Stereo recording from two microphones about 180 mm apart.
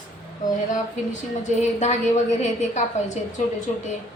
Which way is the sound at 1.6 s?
40° left (ahead or behind).